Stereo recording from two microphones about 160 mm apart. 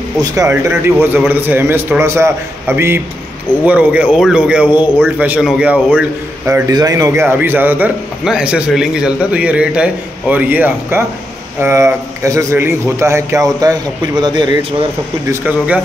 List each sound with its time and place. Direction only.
0.2 s a man's voice: 20° right (ahead or behind)
6.7 s a man's voice: 25° right (ahead or behind)
15.4 s a man's voice: 10° right (ahead or behind)